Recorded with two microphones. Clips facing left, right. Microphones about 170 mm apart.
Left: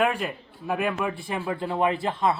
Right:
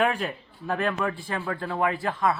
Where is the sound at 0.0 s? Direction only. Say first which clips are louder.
Even; 5° left (ahead or behind).